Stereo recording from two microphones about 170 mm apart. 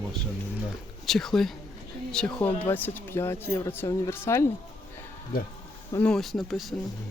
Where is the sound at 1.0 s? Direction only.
Centre (ahead or behind).